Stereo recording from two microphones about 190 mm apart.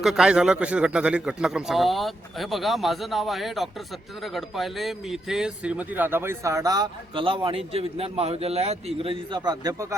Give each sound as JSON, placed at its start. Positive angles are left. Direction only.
{"t": 0.0, "sound": "a man's voice", "side_deg": 0}